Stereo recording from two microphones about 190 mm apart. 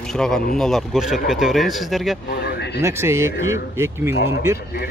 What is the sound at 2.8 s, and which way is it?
Speech, 15° right (ahead or behind).